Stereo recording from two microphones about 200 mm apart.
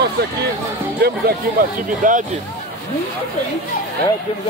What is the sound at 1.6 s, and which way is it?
Speech, 45° right (ahead or behind).